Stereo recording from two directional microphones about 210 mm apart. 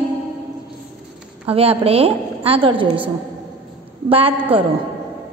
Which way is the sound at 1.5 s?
30° right (ahead or behind).